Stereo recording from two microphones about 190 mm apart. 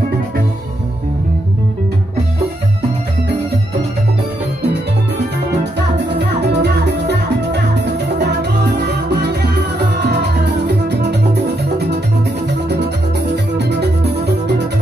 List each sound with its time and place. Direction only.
5.9 s music: 65° right (ahead or behind)
13.6 s music: 60° right (ahead or behind)